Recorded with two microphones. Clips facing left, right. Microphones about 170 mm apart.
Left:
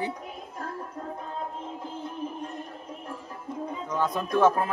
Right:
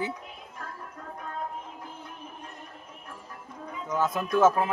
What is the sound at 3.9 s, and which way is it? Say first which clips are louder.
Speech: right 1 dB; 5° right (ahead or behind).